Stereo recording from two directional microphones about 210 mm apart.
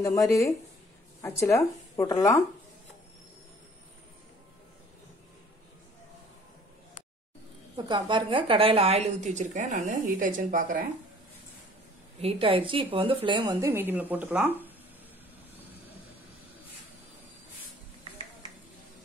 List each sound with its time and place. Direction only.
0.0 s speech: 15° left (ahead or behind)
7.7 s a woman's voice: 20° right (ahead or behind); by 10.9 s 40° right (ahead or behind)
12.2 s speech: 25° right (ahead or behind)
13.7 s speech: 10° right (ahead or behind)